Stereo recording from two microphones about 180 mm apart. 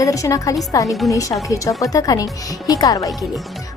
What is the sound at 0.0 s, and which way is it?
A woman's voice, 20° left (ahead or behind).